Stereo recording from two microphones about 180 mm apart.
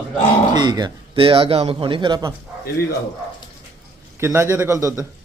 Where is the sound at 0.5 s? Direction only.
25° right (ahead or behind).